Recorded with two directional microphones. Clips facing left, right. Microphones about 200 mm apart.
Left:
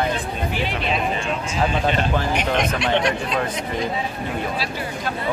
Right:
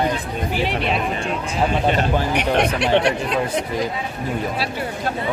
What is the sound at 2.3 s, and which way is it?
Speech, 65° right (ahead or behind).